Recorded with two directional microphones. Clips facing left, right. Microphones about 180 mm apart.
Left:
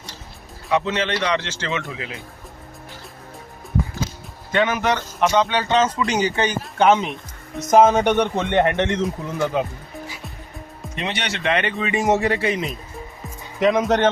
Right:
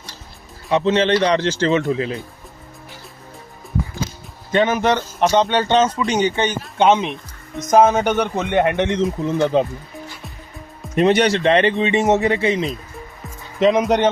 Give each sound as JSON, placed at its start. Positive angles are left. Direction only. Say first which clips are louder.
{"t": 0.7, "sound": "a man's voice", "louder": "right 6 dB", "side_deg": -30}
{"t": 4.5, "sound": "a man's voice", "louder": "right 3 dB", "side_deg": -30}
{"t": 6.0, "sound": "speech", "louder": "right 2 dB", "side_deg": 0}
{"t": 6.7, "sound": "speech", "louder": "right 1 dB", "side_deg": -20}
{"t": 7.0, "sound": "speech", "louder": "right 2 dB", "side_deg": 0}
{"t": 9.2, "sound": "speech", "louder": "right 5 dB", "side_deg": -25}
{"t": 10.9, "sound": "a man's voice", "louder": "right 13 dB", "side_deg": -45}